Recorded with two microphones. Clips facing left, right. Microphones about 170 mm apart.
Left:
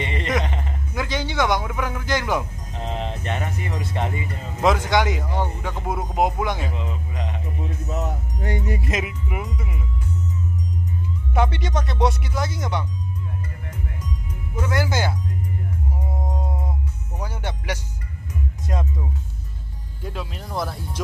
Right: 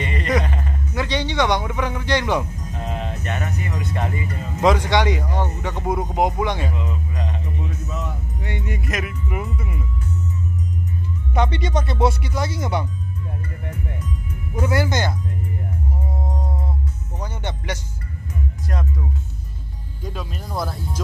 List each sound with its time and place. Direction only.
0.0 s a sound: 20° left (ahead or behind)
0.9 s speech: 5° left (ahead or behind)
2.7 s speech: 25° left (ahead or behind)
4.6 s speech: centre (ahead or behind)
6.7 s music: 20° left (ahead or behind)
7.6 s music: 40° left (ahead or behind)
9.3 s speech: 5° left (ahead or behind)
11.3 s speech: 5° left (ahead or behind)
14.6 s speech: 5° right (ahead or behind)
14.9 s speech: 5° left (ahead or behind)
16.2 s music: 15° left (ahead or behind)
18.7 s speech: 20° left (ahead or behind)
20.0 s speech: 5° left (ahead or behind)